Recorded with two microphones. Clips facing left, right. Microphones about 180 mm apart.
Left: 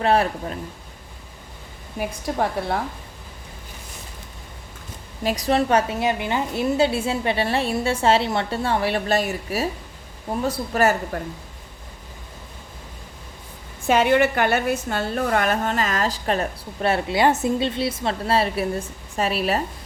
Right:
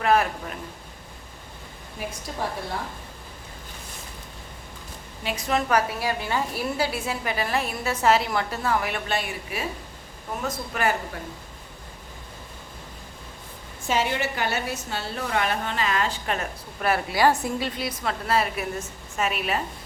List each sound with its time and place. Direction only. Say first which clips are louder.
0.0 s a woman's voice: left 2 dB; 30° left (ahead or behind)
5.2 s a woman's voice: left 6 dB; 40° left (ahead or behind)
13.8 s a woman's voice: left 8 dB; 60° left (ahead or behind); by 19.6 s 35° left (ahead or behind)